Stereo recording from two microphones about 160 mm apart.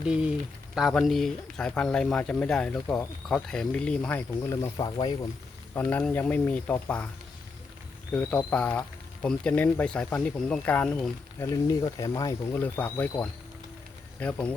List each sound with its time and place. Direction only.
0.0 s speech: 5° right (ahead or behind)
4.4 s speech: 20° left (ahead or behind)
5.7 s speech: 10° left (ahead or behind)
8.1 s speech: 10° left (ahead or behind)
11.3 s speech: 20° left (ahead or behind)